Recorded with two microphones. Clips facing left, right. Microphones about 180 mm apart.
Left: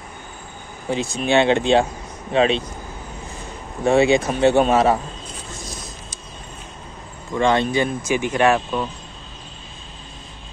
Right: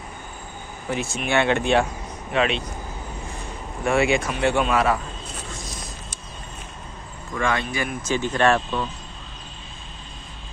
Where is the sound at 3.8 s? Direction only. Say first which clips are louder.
Left 5 dB; 20° left (ahead or behind).